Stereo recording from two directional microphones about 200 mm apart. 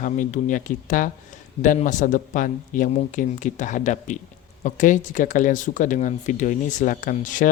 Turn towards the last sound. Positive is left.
turn(degrees=40)  # may be behind; listen again after turning